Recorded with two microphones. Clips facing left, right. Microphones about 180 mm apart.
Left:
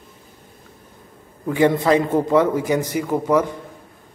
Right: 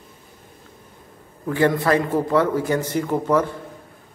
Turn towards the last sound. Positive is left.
turn(degrees=15)  # may be behind; listen again after turning